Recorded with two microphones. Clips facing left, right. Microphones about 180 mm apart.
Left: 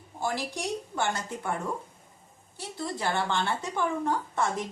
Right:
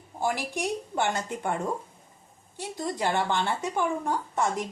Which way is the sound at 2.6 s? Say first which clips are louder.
Right 3 dB; 15° right (ahead or behind).